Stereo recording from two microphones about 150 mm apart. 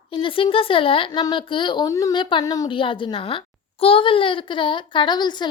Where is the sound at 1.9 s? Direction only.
20° left (ahead or behind).